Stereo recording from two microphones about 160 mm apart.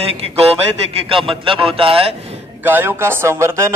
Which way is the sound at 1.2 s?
35° right (ahead or behind).